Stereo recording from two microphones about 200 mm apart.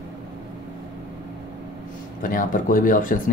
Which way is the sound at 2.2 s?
40° left (ahead or behind).